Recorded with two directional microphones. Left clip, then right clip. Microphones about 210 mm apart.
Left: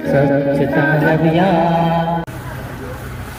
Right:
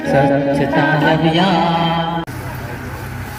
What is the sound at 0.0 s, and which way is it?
Chant, 40° left (ahead or behind).